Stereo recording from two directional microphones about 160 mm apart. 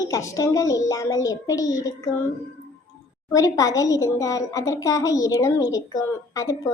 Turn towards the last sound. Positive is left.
turn(degrees=20)  # may be behind; listen again after turning